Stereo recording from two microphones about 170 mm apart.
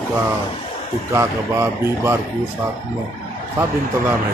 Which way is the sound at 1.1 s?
15° right (ahead or behind).